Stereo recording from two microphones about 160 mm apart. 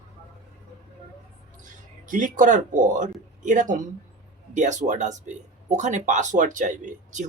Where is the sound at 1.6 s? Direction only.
55° right (ahead or behind).